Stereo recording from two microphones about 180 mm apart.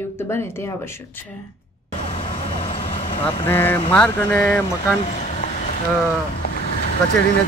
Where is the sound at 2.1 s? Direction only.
35° left (ahead or behind).